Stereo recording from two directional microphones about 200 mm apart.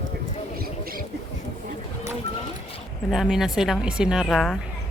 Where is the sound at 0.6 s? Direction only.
45° right (ahead or behind).